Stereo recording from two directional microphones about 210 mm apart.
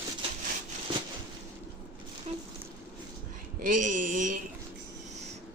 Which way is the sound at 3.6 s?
35° right (ahead or behind).